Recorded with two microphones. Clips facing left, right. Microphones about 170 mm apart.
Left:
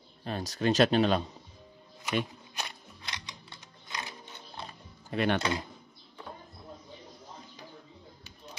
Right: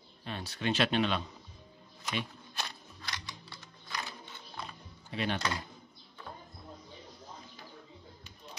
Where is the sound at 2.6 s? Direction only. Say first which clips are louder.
Left 1 dB; 20° left (ahead or behind).